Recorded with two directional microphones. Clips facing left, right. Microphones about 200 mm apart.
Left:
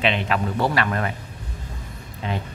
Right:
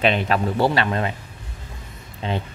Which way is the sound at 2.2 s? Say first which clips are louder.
Right 2 dB; 30° right (ahead or behind).